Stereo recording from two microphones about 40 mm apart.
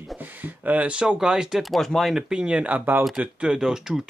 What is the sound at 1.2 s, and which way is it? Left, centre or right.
Speech, centre.